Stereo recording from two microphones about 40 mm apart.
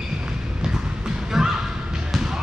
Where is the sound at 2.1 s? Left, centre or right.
Centre.